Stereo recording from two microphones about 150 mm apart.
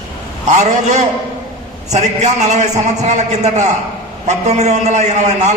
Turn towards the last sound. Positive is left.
turn(degrees=-50)  # may be behind; listen again after turning